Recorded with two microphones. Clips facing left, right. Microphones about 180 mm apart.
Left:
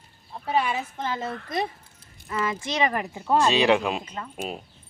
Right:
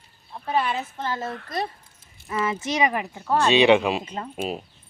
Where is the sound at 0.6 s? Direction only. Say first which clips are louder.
Even; 10° left (ahead or behind).